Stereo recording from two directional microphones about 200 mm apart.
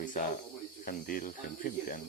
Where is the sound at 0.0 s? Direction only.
40° left (ahead or behind).